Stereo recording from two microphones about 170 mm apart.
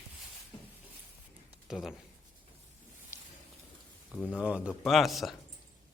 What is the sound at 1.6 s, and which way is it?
Speech, 5° right (ahead or behind).